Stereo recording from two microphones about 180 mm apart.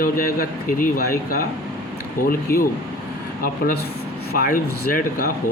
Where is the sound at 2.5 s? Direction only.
50° left (ahead or behind).